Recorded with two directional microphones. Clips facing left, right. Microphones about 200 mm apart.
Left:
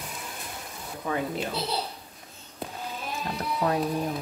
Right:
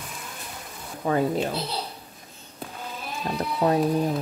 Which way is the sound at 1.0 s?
40° right (ahead or behind).